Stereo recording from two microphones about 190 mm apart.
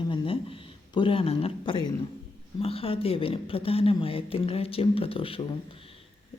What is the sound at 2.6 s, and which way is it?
Speech, 30° left (ahead or behind).